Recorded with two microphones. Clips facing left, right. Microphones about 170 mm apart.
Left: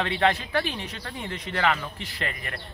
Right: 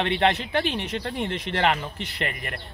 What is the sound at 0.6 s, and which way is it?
Speech, 70° right (ahead or behind).